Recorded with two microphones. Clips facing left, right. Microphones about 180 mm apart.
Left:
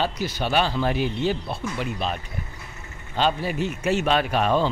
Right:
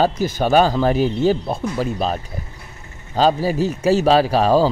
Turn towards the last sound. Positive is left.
turn(degrees=-35)  # may be behind; listen again after turning